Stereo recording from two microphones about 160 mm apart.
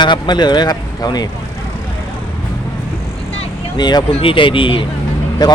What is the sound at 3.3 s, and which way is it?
Vehicle, 25° left (ahead or behind).